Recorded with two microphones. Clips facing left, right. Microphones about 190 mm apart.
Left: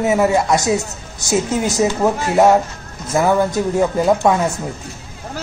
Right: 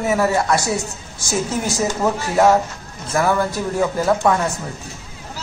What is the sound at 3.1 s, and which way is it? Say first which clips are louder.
A man's voice: left 3 dB; 20° left (ahead or behind).